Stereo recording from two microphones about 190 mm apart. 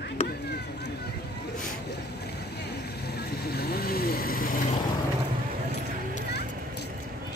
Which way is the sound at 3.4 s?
55° left (ahead or behind).